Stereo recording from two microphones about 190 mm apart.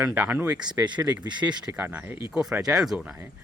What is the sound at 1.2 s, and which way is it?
Speech, 25° right (ahead or behind).